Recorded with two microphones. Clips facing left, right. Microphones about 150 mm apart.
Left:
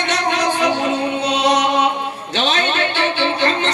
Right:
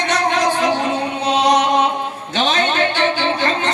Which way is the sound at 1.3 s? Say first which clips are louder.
Right 3 dB; 45° right (ahead or behind).